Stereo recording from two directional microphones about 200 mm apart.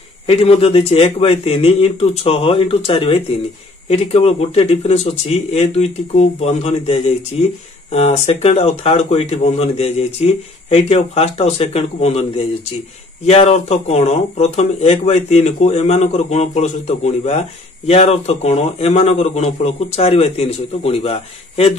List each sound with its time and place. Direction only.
0.3 s a man's voice: 30° left (ahead or behind)